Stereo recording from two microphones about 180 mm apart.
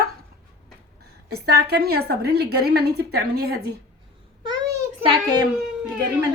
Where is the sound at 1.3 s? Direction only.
60° right (ahead or behind).